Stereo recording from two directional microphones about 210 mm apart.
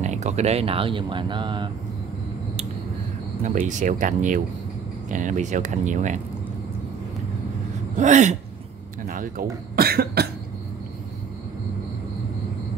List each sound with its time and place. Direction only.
0.0 s speech: 35° right (ahead or behind)
3.4 s speech: 35° right (ahead or behind)
8.0 s speech: 35° right (ahead or behind)